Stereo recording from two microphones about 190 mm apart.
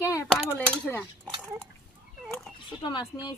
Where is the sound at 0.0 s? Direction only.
15° left (ahead or behind).